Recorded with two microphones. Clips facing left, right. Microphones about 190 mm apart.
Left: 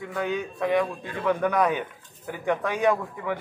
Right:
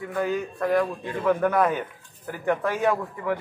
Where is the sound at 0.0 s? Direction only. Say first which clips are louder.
Right 2 dB; 5° right (ahead or behind).